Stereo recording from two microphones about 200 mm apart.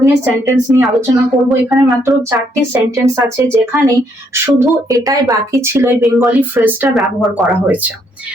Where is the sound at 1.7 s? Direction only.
Centre (ahead or behind).